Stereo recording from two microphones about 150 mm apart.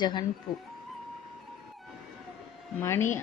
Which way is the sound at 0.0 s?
30° left (ahead or behind).